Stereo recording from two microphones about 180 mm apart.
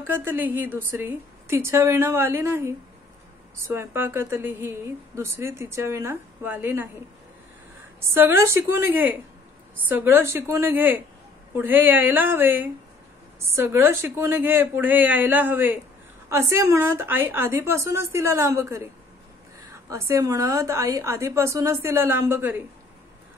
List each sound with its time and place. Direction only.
0.0 s speech: 10° right (ahead or behind)
8.1 s speech: 15° right (ahead or behind)
19.9 s speech: 15° right (ahead or behind)